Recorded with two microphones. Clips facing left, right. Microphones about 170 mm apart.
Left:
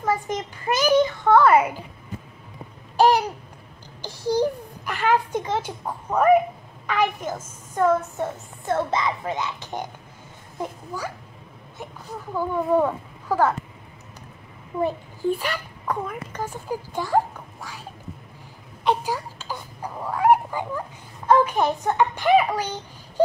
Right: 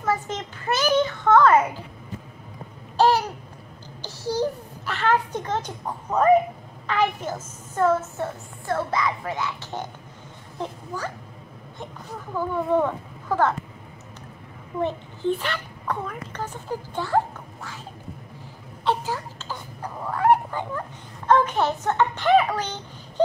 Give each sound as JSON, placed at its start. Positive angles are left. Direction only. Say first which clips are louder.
{"t": 0.0, "sound": "a child's voice", "louder": "left 1 dB", "side_deg": 10}
{"t": 3.0, "sound": "babbling", "louder": "left 1 dB", "side_deg": 15}
{"t": 4.0, "sound": "a sound", "louder": "left 3 dB", "side_deg": 15}
{"t": 6.9, "sound": "a child's voice", "louder": "even", "side_deg": 10}
{"t": 12.4, "sound": "a child's voice", "louder": "left 1 dB", "side_deg": 10}
{"t": 14.8, "sound": "a child's voice", "louder": "left 2 dB", "side_deg": 10}
{"t": 18.9, "sound": "babbling", "louder": "left 2 dB", "side_deg": 15}
{"t": 21.3, "sound": "a sound", "louder": "left 1 dB", "side_deg": 10}